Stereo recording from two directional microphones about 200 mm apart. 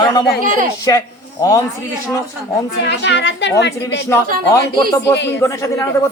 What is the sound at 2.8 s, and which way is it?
A woman's voice, 60° left (ahead or behind).